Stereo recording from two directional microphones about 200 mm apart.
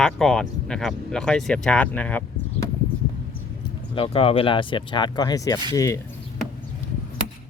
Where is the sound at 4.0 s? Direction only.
30° left (ahead or behind).